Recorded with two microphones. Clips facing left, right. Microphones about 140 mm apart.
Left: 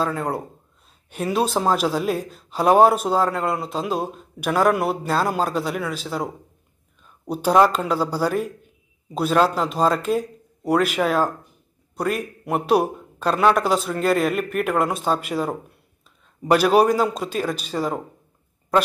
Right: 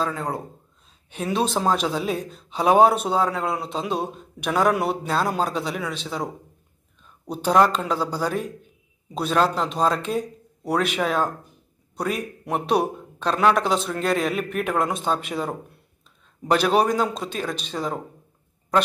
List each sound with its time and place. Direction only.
0.0 s speech: 5° left (ahead or behind)